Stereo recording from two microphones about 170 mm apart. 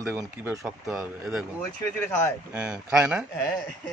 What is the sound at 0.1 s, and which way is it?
Speech, 15° right (ahead or behind).